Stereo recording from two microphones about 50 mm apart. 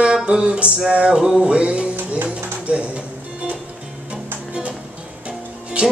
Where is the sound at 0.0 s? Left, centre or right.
Centre.